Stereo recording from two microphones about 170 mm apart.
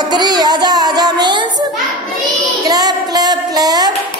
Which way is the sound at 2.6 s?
20° right (ahead or behind).